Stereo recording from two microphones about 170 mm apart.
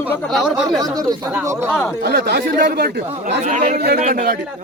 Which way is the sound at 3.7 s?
70° right (ahead or behind).